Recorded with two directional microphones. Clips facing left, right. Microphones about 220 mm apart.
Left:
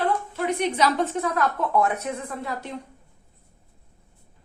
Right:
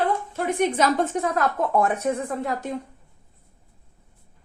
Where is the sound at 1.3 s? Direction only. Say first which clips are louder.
Right 1 dB; 50° right (ahead or behind).